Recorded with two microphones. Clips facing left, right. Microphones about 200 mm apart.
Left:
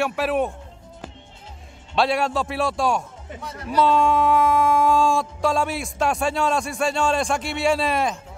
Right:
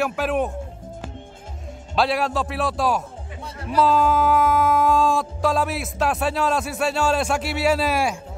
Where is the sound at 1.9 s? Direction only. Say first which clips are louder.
Even; centre (ahead or behind).